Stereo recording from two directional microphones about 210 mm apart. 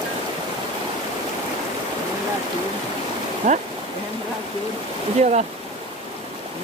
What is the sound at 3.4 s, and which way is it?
Speech, 35° right (ahead or behind).